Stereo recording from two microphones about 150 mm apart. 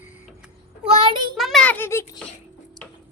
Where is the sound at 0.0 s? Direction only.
10° right (ahead or behind).